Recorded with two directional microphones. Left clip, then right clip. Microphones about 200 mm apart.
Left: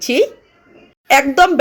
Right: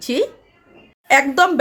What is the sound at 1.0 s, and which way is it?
Speech, centre (ahead or behind).